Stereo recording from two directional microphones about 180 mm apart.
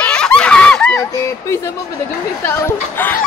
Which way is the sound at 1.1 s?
15° left (ahead or behind).